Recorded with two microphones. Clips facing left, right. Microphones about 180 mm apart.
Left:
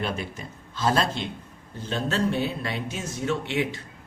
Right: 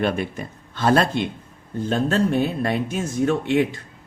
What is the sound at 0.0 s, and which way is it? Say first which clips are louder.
Speech: right 7 dB; 60° right (ahead or behind).